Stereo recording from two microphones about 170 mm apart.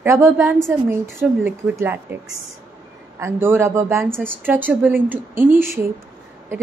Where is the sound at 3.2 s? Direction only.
15° right (ahead or behind).